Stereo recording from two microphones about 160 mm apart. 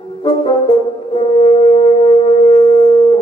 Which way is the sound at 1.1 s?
35° left (ahead or behind).